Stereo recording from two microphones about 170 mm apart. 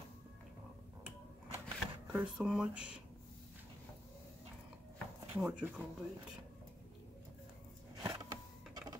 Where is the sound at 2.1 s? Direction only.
5° right (ahead or behind).